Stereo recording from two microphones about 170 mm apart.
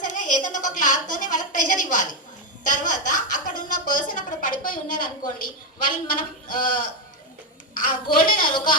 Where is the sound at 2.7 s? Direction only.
50° left (ahead or behind).